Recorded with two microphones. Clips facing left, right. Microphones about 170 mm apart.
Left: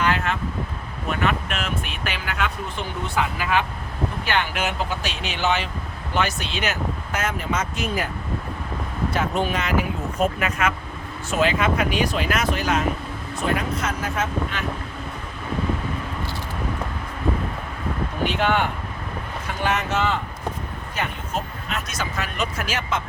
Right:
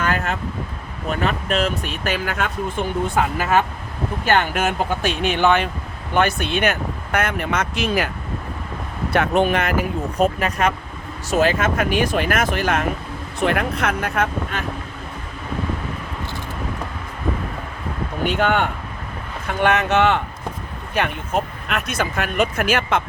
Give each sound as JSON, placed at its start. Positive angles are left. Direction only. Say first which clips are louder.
{"t": 0.0, "sound": "vehicle", "louder": "even", "side_deg": -45}
{"t": 1.1, "sound": "speech", "louder": "right 3 dB", "side_deg": -35}
{"t": 9.0, "sound": "speech", "louder": "right 6 dB", "side_deg": -65}
{"t": 10.2, "sound": "speech", "louder": "right 4 dB", "side_deg": -35}
{"t": 13.4, "sound": "speech", "louder": "right 4 dB", "side_deg": -65}
{"t": 19.5, "sound": "speech", "louder": "right 6 dB", "side_deg": -60}